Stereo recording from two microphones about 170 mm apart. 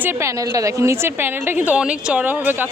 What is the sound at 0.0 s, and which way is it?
Speech, 15° right (ahead or behind).